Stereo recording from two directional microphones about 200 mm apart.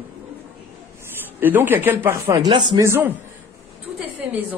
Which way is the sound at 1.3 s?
10° right (ahead or behind).